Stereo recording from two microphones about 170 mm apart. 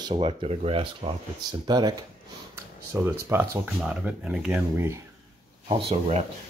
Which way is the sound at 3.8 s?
5° right (ahead or behind).